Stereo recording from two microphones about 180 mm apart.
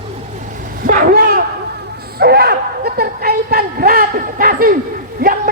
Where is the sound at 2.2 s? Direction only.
60° right (ahead or behind).